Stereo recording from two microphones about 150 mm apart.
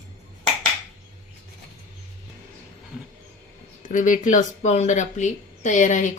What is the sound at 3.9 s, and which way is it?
Speech, 60° left (ahead or behind).